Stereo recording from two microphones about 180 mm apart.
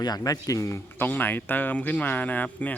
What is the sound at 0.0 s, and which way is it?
Speech, 20° left (ahead or behind).